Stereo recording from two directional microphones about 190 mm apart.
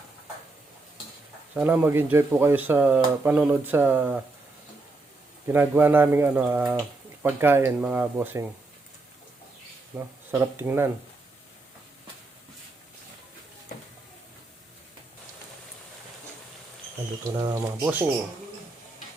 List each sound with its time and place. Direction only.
1.5 s speech: 10° right (ahead or behind)
5.5 s speech: 10° right (ahead or behind)
9.9 s speech: 5° right (ahead or behind)
17.4 s speech: 20° right (ahead or behind)